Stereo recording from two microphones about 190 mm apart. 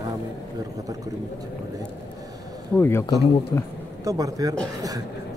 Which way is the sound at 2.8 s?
15° left (ahead or behind).